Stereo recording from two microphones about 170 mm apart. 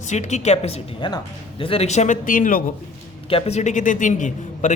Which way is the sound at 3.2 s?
35° left (ahead or behind).